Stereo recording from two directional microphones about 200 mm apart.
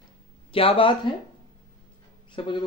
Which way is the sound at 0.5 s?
25° left (ahead or behind).